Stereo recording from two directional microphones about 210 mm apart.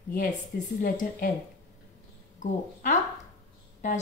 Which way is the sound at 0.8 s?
40° left (ahead or behind).